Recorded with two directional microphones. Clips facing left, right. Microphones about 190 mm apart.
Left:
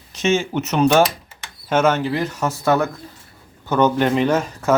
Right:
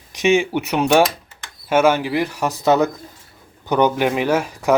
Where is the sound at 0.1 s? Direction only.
15° right (ahead or behind).